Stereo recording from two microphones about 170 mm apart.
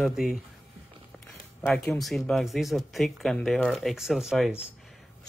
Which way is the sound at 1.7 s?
5° left (ahead or behind).